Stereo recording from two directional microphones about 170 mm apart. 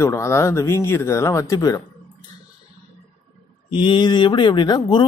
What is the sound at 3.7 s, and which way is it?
Speech, 25° left (ahead or behind).